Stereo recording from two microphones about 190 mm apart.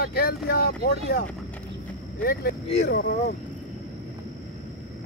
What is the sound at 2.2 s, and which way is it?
Speech, 55° left (ahead or behind).